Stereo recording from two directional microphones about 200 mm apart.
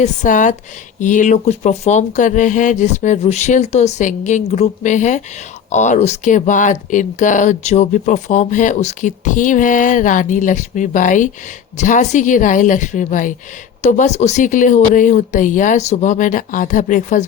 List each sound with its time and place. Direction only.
0.0 s speech: 40° left (ahead or behind)